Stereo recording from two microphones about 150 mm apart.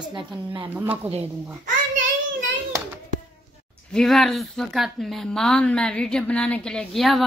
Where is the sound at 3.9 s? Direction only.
5° left (ahead or behind).